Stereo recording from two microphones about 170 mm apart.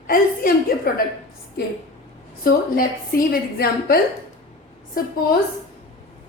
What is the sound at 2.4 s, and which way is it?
A woman's voice, 60° left (ahead or behind).